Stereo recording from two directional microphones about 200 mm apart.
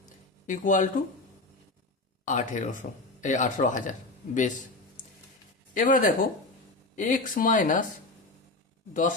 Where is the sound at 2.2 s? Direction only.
40° left (ahead or behind).